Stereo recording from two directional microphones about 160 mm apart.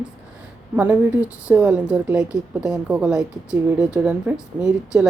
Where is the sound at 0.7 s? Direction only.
10° right (ahead or behind).